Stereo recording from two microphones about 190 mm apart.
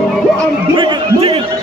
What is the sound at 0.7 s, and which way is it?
Speech, 25° right (ahead or behind).